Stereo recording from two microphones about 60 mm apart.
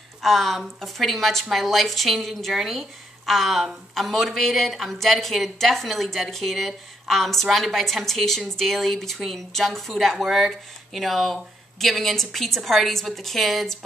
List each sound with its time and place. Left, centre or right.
0.2 s a woman's voice: centre